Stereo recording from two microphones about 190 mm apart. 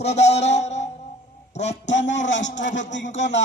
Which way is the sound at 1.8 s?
70° left (ahead or behind).